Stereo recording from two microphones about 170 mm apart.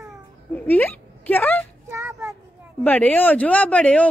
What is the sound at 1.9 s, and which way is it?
Child singing, 15° right (ahead or behind).